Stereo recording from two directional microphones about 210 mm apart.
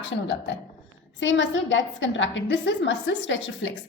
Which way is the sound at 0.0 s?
55° left (ahead or behind).